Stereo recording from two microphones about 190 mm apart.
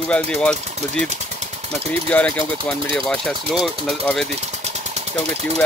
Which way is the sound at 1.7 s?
5° left (ahead or behind).